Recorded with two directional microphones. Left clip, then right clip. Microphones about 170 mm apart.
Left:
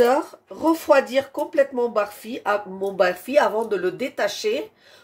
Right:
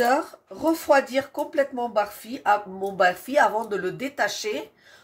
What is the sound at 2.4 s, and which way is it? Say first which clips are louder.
Speech: right 1 dB; 30° left (ahead or behind).